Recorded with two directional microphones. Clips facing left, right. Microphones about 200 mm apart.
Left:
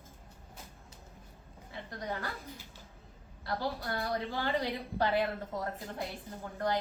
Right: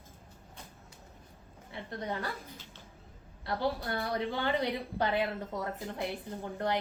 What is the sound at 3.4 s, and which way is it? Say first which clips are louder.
A woman's voice: right 3 dB; 25° right (ahead or behind).